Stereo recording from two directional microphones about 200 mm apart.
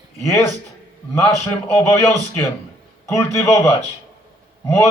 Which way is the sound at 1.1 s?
10° left (ahead or behind).